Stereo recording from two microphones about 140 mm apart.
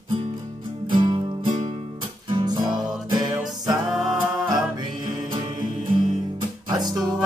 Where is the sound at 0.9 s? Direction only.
35° right (ahead or behind).